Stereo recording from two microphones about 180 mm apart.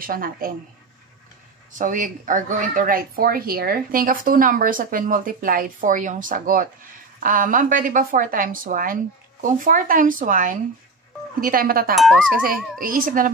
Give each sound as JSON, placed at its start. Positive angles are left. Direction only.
{"t": 0.0, "sound": "speech", "side_deg": -55}
{"t": 1.7, "sound": "speech", "side_deg": -45}
{"t": 11.9, "sound": "speech", "side_deg": 0}
{"t": 12.8, "sound": "speech", "side_deg": -50}